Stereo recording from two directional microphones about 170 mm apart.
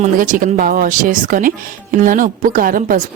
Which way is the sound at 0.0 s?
50° right (ahead or behind).